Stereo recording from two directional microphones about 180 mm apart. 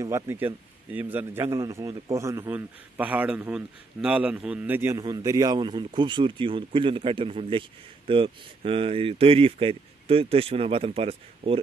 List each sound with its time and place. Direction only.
0.0 s a man's voice: 15° right (ahead or behind); by 11.6 s 30° right (ahead or behind)